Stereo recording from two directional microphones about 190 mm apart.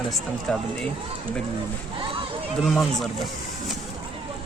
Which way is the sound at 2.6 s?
Centre (ahead or behind).